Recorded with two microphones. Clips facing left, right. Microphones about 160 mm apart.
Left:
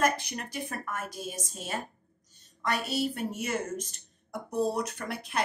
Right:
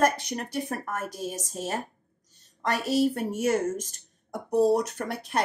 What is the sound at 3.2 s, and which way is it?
Speech, 45° right (ahead or behind).